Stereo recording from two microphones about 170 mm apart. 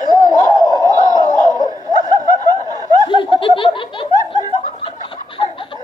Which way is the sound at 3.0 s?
30° left (ahead or behind).